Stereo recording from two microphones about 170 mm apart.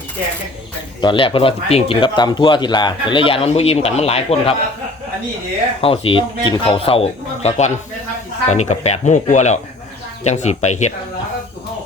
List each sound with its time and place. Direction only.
1.0 s speech: 30° left (ahead or behind)
5.8 s speech: 35° left (ahead or behind)